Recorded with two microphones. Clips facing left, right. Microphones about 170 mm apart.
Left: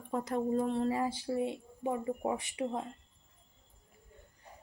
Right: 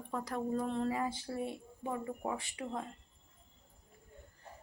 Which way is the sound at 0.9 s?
30° left (ahead or behind).